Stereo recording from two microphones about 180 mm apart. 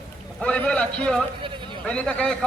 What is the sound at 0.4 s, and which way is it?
A man's voice, 5° left (ahead or behind).